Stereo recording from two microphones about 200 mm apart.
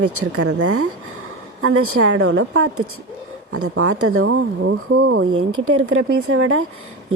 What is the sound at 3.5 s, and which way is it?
A woman's voice, 90° right.